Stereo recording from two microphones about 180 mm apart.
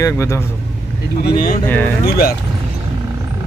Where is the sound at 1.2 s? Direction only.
55° left (ahead or behind).